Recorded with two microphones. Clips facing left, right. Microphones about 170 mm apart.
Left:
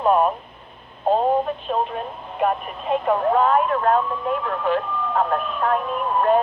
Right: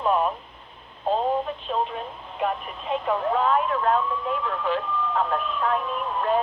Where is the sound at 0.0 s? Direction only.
50° left (ahead or behind).